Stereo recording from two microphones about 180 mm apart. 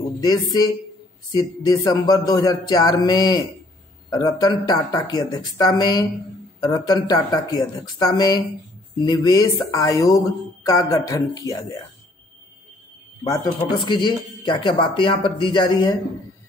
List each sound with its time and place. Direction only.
0.2 s speech: 20° left (ahead or behind)
13.3 s speech: 25° left (ahead or behind)